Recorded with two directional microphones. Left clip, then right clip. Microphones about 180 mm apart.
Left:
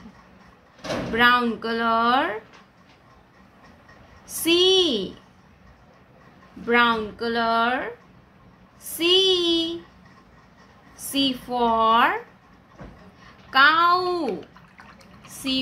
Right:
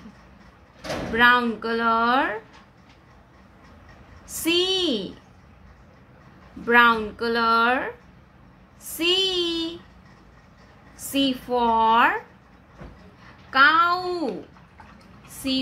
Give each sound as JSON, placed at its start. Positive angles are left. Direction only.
{"t": 1.1, "sound": "a woman's voice", "side_deg": 0}
{"t": 4.3, "sound": "a woman's voice", "side_deg": 0}
{"t": 6.6, "sound": "a woman's voice", "side_deg": -10}
{"t": 8.9, "sound": "a woman's voice", "side_deg": -5}
{"t": 11.1, "sound": "a woman's voice", "side_deg": 0}
{"t": 13.5, "sound": "a woman's voice", "side_deg": 5}